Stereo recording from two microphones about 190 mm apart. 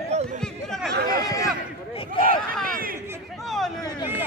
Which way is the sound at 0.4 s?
Centre (ahead or behind).